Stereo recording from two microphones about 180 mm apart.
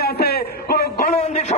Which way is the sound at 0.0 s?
60° left (ahead or behind).